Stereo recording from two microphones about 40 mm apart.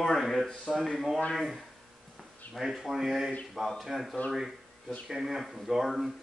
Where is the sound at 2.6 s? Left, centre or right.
Centre.